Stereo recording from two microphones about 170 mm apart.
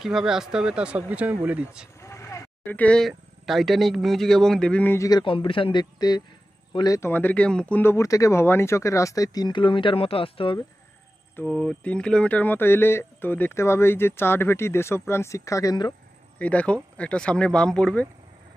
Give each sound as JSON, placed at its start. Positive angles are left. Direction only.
{"t": 0.0, "sound": "speech", "side_deg": 0}
{"t": 2.0, "sound": "speech", "side_deg": 15}
{"t": 5.2, "sound": "speech", "side_deg": 30}
{"t": 11.3, "sound": "speech", "side_deg": 5}
{"t": 16.3, "sound": "speech", "side_deg": 10}